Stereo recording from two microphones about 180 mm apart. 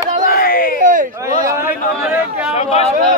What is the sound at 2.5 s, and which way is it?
Speech, 35° left (ahead or behind).